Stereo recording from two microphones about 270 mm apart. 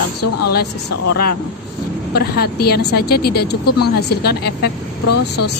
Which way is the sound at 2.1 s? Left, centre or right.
Left.